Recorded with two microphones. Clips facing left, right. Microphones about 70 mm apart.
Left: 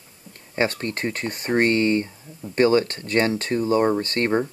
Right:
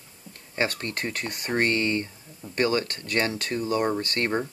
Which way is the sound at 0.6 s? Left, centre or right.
Left.